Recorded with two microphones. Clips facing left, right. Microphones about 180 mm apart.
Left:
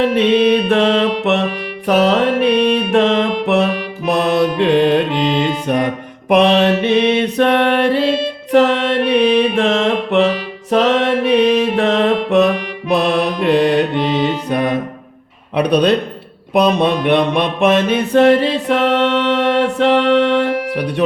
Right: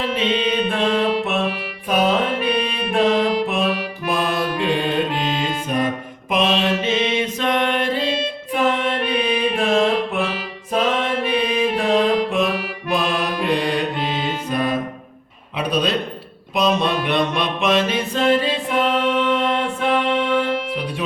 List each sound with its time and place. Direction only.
0.0 s music: 70° left (ahead or behind)
0.7 s music: 80° left
5.6 s mantra: 70° left (ahead or behind)
8.5 s music: 75° left (ahead or behind)
15.5 s a sound: 65° left (ahead or behind)
16.6 s music: 60° left (ahead or behind)